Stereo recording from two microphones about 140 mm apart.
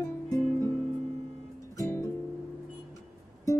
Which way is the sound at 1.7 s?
25° left (ahead or behind).